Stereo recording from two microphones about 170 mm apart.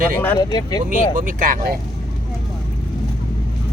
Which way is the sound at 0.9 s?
55° right (ahead or behind).